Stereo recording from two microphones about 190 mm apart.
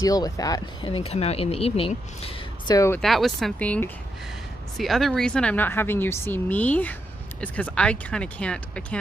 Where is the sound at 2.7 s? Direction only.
15° left (ahead or behind).